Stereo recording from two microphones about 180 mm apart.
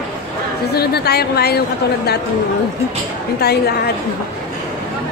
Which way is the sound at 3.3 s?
60° left (ahead or behind).